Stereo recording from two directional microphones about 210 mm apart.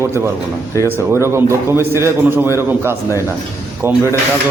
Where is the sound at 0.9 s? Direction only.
10° right (ahead or behind).